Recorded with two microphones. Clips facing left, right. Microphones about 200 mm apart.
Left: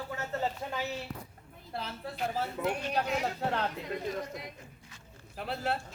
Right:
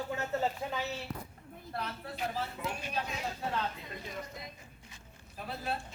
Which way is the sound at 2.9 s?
65° left (ahead or behind).